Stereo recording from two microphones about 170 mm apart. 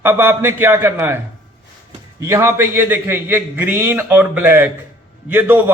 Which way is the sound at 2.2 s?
15° right (ahead or behind).